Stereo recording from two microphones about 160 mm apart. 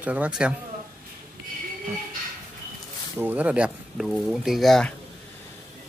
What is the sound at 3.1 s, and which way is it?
Speech, 10° right (ahead or behind).